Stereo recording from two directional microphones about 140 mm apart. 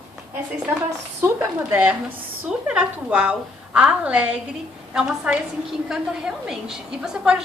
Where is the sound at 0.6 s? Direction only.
10° right (ahead or behind).